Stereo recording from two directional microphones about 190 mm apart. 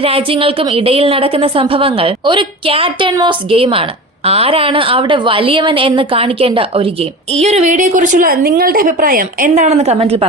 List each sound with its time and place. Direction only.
0.0 s a woman's voice: 30° right (ahead or behind)